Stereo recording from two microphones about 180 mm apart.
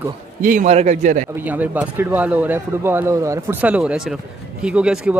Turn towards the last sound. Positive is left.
turn(degrees=-5)  # may be behind; listen again after turning